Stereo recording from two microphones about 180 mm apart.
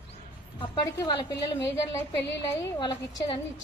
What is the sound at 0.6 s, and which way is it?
Speech, 25° left (ahead or behind).